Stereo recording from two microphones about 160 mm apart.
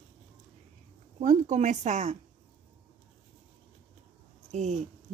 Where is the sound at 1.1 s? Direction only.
45° right (ahead or behind).